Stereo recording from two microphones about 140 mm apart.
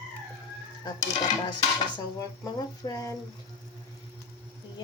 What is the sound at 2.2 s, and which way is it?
Speech, 25° left (ahead or behind).